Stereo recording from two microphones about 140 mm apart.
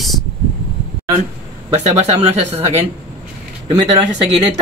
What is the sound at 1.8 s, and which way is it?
Speech, 50° right (ahead or behind).